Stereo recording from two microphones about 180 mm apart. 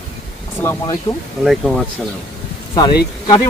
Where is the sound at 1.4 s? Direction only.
Centre (ahead or behind).